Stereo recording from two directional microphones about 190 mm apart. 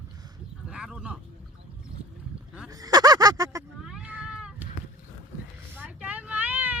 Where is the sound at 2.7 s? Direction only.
20° right (ahead or behind).